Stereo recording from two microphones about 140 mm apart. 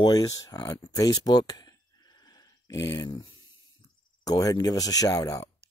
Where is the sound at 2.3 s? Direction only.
25° left (ahead or behind).